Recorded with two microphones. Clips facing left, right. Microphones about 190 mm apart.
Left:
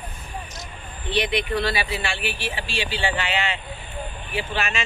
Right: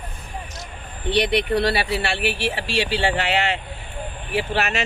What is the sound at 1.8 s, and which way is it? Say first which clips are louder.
Speech: right 5 dB; 65° right (ahead or behind).